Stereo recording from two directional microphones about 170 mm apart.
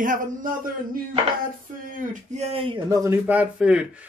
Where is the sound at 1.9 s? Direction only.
40° right (ahead or behind).